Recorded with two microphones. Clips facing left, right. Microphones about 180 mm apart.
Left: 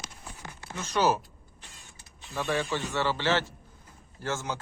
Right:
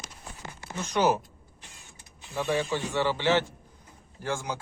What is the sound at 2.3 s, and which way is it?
Speech, 10° right (ahead or behind).